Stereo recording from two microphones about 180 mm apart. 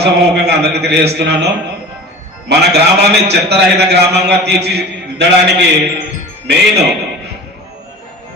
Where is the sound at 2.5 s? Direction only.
70° right (ahead or behind).